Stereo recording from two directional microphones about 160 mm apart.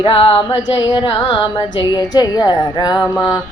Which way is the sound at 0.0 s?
35° left (ahead or behind).